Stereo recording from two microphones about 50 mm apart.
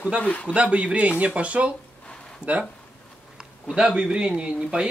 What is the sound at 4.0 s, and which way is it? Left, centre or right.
Speech, centre.